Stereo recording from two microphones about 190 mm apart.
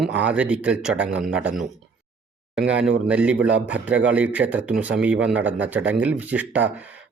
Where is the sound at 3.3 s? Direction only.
65° right (ahead or behind).